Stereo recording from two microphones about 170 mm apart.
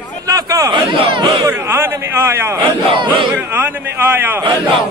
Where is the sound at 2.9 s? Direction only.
30° right (ahead or behind).